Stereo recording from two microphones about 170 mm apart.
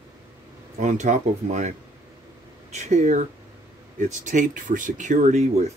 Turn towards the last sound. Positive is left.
turn(degrees=-45)  # may be behind; listen again after turning